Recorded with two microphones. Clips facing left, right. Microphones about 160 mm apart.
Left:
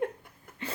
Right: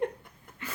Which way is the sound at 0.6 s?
30° left (ahead or behind).